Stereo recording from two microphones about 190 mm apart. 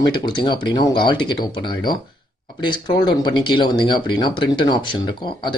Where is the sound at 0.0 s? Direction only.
25° left (ahead or behind).